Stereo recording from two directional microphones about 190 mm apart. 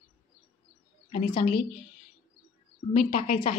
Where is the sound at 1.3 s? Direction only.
25° left (ahead or behind).